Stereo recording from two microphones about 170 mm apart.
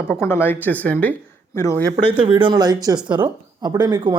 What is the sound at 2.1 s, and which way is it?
Speech, 30° right (ahead or behind).